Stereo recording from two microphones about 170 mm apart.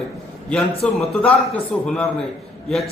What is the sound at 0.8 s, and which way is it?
Speech, 5° left (ahead or behind).